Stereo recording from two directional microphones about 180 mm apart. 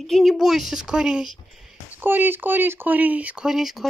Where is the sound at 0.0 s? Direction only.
Centre (ahead or behind).